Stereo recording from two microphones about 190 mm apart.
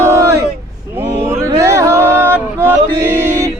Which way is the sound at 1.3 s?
15° right (ahead or behind).